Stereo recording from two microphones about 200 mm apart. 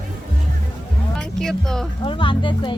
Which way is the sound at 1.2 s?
Centre (ahead or behind).